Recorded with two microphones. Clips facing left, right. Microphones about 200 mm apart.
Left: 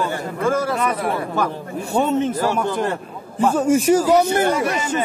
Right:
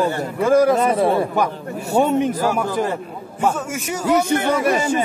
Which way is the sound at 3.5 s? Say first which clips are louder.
Left 11 dB; 35° left (ahead or behind).